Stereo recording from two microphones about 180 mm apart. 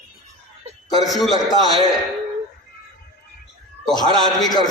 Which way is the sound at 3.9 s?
20° left (ahead or behind).